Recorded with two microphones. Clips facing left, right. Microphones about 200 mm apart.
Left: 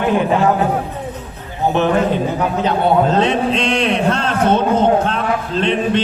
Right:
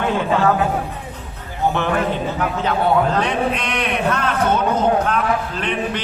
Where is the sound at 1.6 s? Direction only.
20° left (ahead or behind).